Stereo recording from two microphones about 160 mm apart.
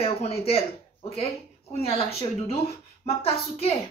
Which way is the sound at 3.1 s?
40° left (ahead or behind).